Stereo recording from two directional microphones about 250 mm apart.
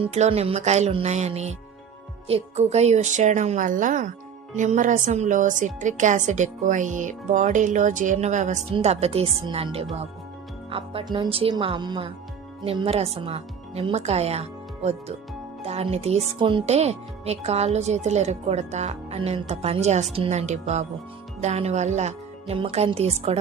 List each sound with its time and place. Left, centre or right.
0.0 s a woman's voice: right